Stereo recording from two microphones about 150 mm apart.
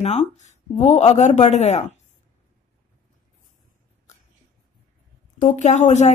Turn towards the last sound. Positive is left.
turn(degrees=50)  # may be behind; listen again after turning